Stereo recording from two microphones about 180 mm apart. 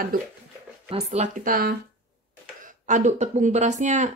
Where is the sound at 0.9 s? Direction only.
40° right (ahead or behind).